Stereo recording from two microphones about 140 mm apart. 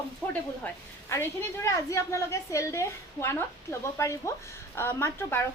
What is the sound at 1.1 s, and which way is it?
A woman's voice, 20° left (ahead or behind).